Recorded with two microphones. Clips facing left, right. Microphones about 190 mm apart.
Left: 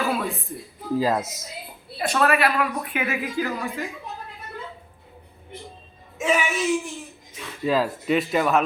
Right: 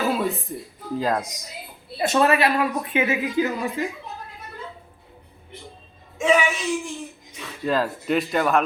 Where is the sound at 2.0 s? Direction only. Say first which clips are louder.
Right 2 dB; 25° right (ahead or behind).